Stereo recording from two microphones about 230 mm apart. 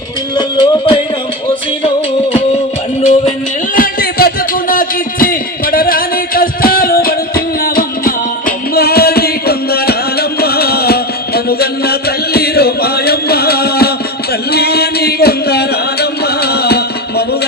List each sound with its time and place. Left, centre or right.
0.3 s music: centre
3.8 s music: left
14.5 s a sound: left